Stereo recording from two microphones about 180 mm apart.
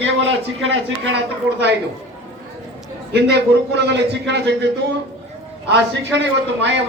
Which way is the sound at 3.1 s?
70° right (ahead or behind).